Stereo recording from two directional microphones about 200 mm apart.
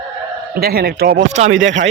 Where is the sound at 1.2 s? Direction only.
35° right (ahead or behind).